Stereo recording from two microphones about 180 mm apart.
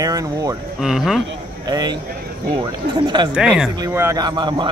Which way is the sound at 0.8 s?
Centre (ahead or behind).